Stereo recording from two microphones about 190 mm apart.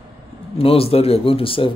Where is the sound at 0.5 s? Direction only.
30° left (ahead or behind).